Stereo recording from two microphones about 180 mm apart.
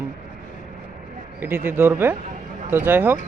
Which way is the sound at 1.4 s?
10° right (ahead or behind).